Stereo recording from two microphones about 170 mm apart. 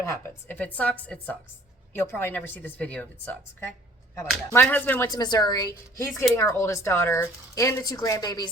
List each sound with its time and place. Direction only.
0.0 s speech: 15° left (ahead or behind)